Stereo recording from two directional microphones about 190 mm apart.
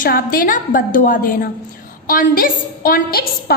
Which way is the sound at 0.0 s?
50° left (ahead or behind).